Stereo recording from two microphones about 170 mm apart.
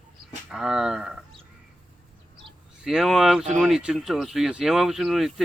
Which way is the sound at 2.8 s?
Centre (ahead or behind).